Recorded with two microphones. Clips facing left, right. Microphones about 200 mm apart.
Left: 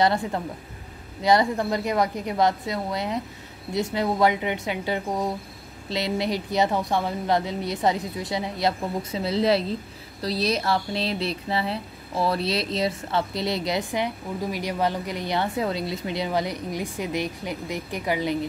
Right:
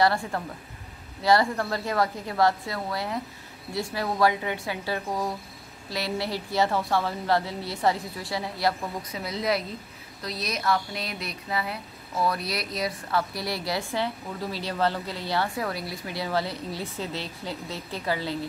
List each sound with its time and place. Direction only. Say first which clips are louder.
0.0 s speech: left 2 dB; 20° left (ahead or behind)